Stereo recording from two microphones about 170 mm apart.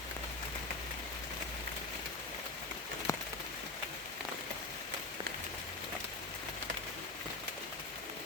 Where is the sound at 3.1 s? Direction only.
15° left (ahead or behind).